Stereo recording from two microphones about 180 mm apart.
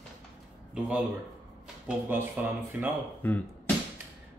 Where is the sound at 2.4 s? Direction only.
10° right (ahead or behind).